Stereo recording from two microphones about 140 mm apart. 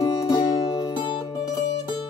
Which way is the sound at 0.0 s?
25° left (ahead or behind).